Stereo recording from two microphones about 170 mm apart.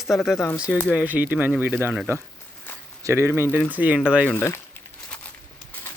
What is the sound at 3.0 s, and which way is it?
Speech, 15° right (ahead or behind).